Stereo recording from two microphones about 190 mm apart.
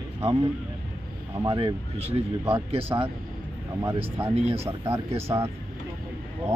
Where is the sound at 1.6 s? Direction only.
30° right (ahead or behind).